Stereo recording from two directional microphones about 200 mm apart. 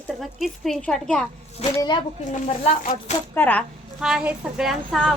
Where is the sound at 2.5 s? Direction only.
35° left (ahead or behind).